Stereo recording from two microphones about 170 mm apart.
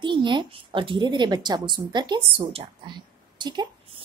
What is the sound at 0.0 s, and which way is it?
A woman's voice, 30° right (ahead or behind).